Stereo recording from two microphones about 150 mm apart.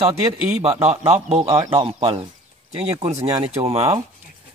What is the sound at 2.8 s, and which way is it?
Speech, 45° right (ahead or behind).